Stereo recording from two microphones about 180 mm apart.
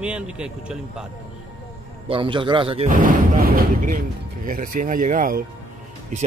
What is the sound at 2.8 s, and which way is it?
Speech, 50° right (ahead or behind).